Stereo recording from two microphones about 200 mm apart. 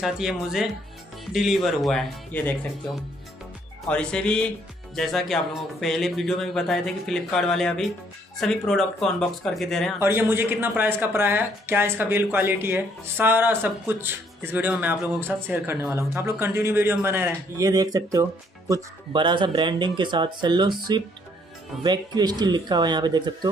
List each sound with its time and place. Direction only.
0.0 s speech: centre (ahead or behind)
9.9 s speech: 10° right (ahead or behind)